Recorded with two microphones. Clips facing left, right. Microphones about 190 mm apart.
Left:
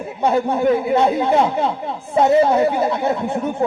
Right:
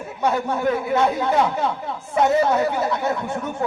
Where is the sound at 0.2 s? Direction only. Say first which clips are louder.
Left 4 dB; 25° left (ahead or behind).